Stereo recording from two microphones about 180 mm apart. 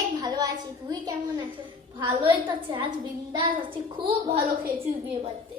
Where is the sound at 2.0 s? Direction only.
25° right (ahead or behind).